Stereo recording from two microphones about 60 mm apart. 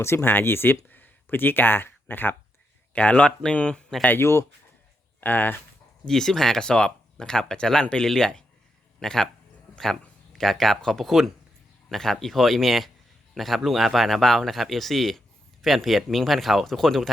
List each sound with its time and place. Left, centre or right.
0.0 s speech: left
0.3 s speech: left
2.9 s speech: left
4.2 s speech: left
5.2 s speech: left
6.1 s a man's voice: centre